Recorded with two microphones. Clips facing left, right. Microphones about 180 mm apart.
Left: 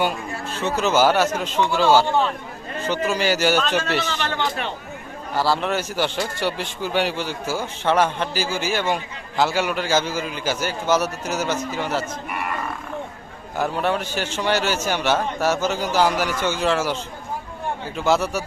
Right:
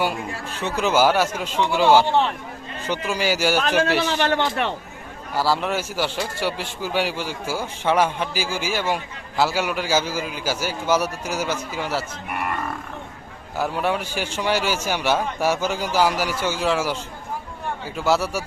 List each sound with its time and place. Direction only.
0.6 s a man's voice: 15° right (ahead or behind)
3.1 s a man's voice: 10° right (ahead or behind)
4.0 s a man's voice: 65° right (ahead or behind)
5.4 s a man's voice: 5° right (ahead or behind)
12.3 s livestock: 50° right (ahead or behind)
13.6 s a man's voice: 5° right (ahead or behind)